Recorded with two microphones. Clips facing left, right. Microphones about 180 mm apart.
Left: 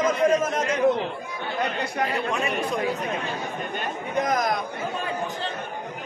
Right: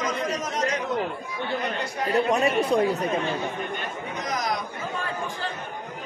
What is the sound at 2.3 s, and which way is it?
Speech, 35° right (ahead or behind).